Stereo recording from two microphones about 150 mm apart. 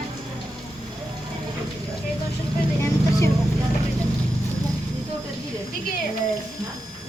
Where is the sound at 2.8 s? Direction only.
20° left (ahead or behind).